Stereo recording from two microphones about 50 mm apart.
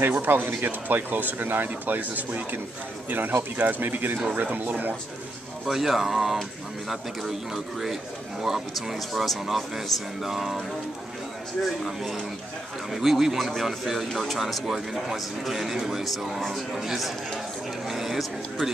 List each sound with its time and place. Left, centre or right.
0.0 s speech: right
5.7 s a man's voice: centre
11.6 s a man's voice: centre